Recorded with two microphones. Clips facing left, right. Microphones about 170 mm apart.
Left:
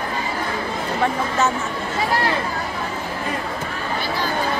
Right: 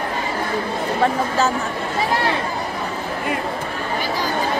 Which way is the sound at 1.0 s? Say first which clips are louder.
Right 1 dB; 35° right (ahead or behind).